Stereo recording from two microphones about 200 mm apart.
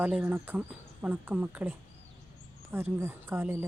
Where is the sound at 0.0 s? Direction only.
10° right (ahead or behind).